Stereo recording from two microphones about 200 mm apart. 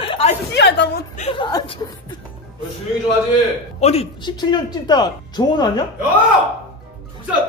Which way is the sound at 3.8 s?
30° left (ahead or behind).